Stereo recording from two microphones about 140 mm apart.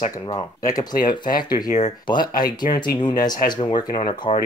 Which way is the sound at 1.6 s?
55° left (ahead or behind).